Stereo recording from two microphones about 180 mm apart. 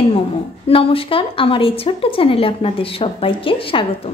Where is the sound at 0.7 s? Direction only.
30° left (ahead or behind).